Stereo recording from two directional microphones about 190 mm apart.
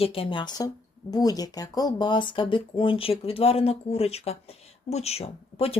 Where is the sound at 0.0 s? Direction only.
30° left (ahead or behind).